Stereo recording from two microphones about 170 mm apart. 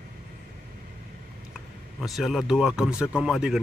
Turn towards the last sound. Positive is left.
turn(degrees=-5)  # may be behind; listen again after turning